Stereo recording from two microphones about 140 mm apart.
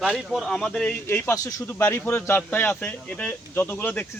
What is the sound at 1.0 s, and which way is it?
A man's voice, 15° left (ahead or behind).